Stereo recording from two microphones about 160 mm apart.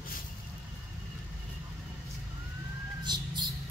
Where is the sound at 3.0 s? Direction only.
25° right (ahead or behind).